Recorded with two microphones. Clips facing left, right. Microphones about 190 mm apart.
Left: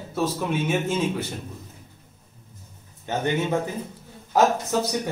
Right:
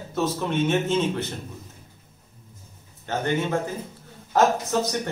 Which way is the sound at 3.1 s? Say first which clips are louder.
Left 1 dB; 15° left (ahead or behind).